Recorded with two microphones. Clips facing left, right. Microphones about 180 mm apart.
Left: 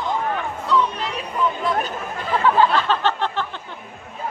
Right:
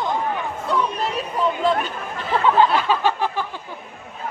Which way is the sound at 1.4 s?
30° right (ahead or behind).